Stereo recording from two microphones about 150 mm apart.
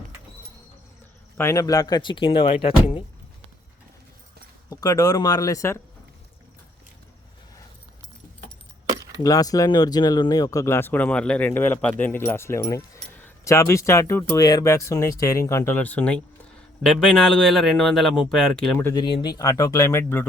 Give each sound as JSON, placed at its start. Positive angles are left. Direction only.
{"t": 1.4, "sound": "speech", "side_deg": 20}
{"t": 4.7, "sound": "speech", "side_deg": 25}
{"t": 8.9, "sound": "keys jangling", "side_deg": -25}
{"t": 9.2, "sound": "a man's voice", "side_deg": 25}
{"t": 19.2, "sound": "speech", "side_deg": 25}